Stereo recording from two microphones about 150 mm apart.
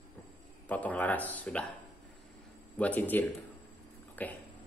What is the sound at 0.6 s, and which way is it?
Speech, 10° left (ahead or behind).